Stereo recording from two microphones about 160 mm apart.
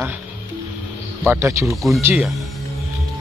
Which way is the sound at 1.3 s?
15° right (ahead or behind).